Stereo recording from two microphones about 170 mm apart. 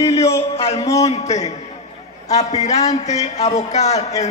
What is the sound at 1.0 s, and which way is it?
A man's voice, 40° left (ahead or behind).